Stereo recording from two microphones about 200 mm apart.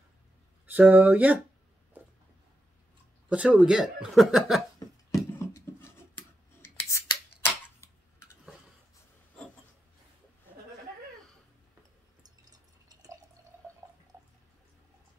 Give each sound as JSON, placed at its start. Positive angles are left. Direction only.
{"t": 0.7, "sound": "speech", "side_deg": -10}
{"t": 3.3, "sound": "speech", "side_deg": -5}
{"t": 4.7, "sound": "a sound", "side_deg": 15}
{"t": 7.8, "sound": "cutlery", "side_deg": 15}
{"t": 12.2, "sound": "drip", "side_deg": -20}